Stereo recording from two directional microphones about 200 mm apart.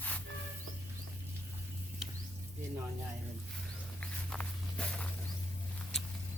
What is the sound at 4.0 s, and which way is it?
Walk, 5° left (ahead or behind).